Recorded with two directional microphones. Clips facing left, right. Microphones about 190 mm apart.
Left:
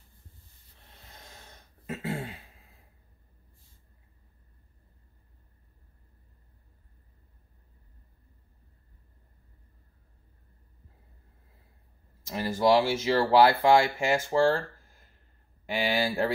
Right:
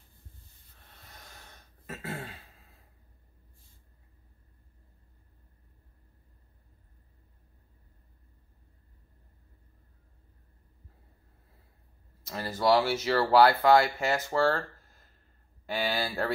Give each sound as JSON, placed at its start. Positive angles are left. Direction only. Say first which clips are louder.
{"t": 1.9, "sound": "a sound", "louder": "left 5 dB", "side_deg": 20}
{"t": 12.3, "sound": "speech", "louder": "left 2 dB", "side_deg": 20}
{"t": 15.7, "sound": "speech", "louder": "left 3 dB", "side_deg": 20}